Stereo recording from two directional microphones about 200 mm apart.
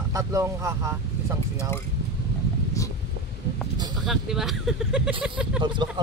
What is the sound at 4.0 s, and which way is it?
Speech, centre (ahead or behind).